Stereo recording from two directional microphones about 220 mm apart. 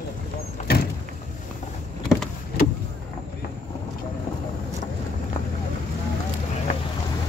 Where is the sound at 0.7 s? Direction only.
45° left (ahead or behind).